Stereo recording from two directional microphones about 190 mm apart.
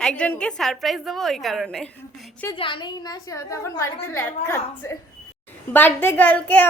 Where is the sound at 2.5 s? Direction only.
25° left (ahead or behind).